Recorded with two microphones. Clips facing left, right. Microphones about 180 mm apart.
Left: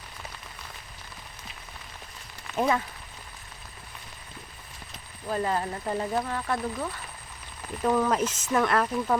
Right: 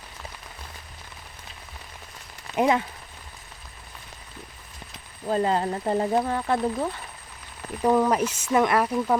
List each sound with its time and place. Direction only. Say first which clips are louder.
2.6 s speech: right 4 dB; 20° right (ahead or behind)
5.2 s speech: right 5 dB; 25° right (ahead or behind)
7.8 s speech: right 3 dB; 15° right (ahead or behind)